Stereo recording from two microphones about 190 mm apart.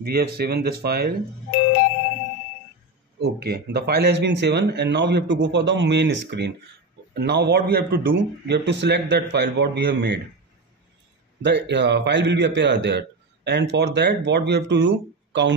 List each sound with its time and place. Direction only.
0.0 s a man's voice: 55° right (ahead or behind)
3.2 s a man's voice: 55° right (ahead or behind)
11.4 s a man's voice: 65° right (ahead or behind)